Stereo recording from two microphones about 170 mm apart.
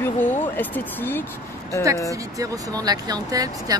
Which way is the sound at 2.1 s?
20° right (ahead or behind).